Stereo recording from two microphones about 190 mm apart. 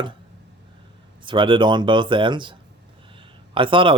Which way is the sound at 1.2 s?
25° right (ahead or behind).